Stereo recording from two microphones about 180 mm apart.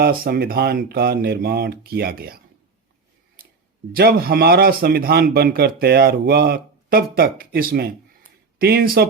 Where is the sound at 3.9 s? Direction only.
55° right (ahead or behind).